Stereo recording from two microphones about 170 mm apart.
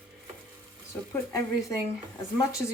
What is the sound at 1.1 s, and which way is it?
Speech, 15° left (ahead or behind).